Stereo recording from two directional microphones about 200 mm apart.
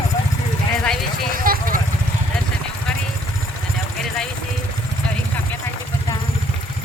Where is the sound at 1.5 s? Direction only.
45° right (ahead or behind).